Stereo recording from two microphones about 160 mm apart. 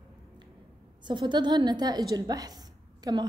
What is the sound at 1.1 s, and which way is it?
A woman's voice, 30° right (ahead or behind).